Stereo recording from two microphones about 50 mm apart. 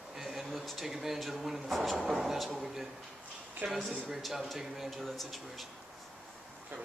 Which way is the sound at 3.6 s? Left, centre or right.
Right.